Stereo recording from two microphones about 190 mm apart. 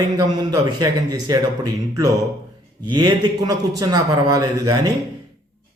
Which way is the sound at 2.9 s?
20° right (ahead or behind).